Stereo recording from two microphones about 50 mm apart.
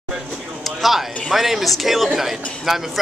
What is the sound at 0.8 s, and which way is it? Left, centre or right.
A man's voice, centre.